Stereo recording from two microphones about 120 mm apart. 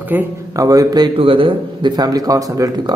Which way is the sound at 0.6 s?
30° right (ahead or behind).